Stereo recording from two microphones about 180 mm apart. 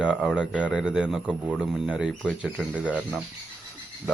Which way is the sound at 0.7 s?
5° right (ahead or behind).